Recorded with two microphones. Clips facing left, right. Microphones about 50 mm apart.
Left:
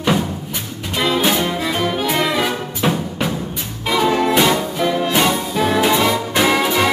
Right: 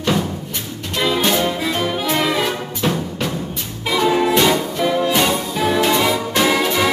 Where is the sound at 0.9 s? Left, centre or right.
Centre.